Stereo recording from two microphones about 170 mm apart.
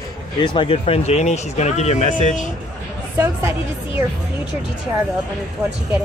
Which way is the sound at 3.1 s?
15° right (ahead or behind).